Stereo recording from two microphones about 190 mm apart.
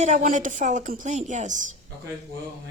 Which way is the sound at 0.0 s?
35° right (ahead or behind).